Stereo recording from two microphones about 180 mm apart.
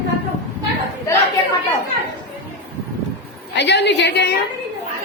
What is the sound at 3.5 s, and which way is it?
Speech, 75° left (ahead or behind).